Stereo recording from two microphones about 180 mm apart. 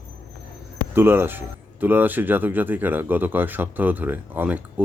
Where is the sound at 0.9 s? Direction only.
10° right (ahead or behind).